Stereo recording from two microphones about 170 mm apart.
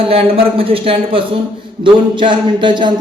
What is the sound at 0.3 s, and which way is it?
A man's voice, 35° right (ahead or behind).